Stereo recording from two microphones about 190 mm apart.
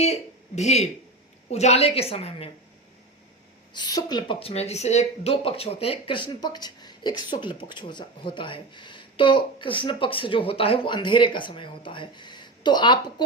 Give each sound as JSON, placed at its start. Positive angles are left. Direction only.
{"t": 0.0, "sound": "a woman's voice", "side_deg": 35}
{"t": 3.8, "sound": "speech", "side_deg": 20}